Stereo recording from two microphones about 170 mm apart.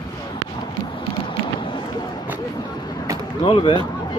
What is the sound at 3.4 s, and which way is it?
Speech, 30° left (ahead or behind).